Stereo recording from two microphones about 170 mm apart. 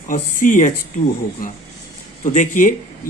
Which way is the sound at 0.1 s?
50° left (ahead or behind).